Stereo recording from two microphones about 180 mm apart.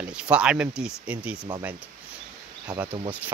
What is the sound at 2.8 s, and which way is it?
Speech, 30° right (ahead or behind).